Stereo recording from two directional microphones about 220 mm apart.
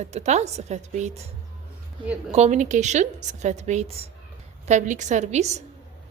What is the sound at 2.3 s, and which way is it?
A woman's voice, 30° right (ahead or behind).